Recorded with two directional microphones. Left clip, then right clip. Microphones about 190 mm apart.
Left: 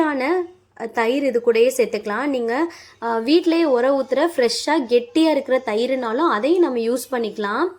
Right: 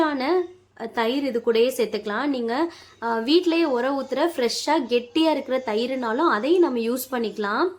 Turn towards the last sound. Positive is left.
turn(degrees=15)  # may be behind; listen again after turning